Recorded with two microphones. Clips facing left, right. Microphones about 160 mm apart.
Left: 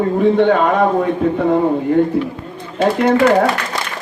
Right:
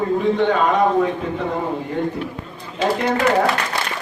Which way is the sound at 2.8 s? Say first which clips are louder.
Left 6 dB; 55° left (ahead or behind).